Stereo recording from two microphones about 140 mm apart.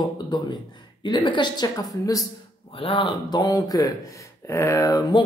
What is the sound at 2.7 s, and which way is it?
Speech, 40° left (ahead or behind).